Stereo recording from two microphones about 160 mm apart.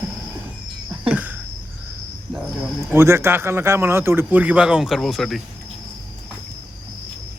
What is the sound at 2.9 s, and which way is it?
A man's voice, 15° right (ahead or behind).